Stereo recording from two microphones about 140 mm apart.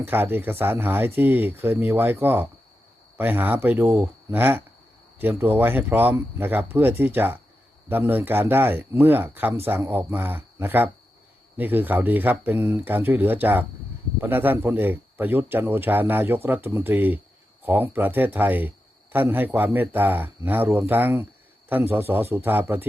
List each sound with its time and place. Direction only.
0.0 s a man's voice: 15° right (ahead or behind)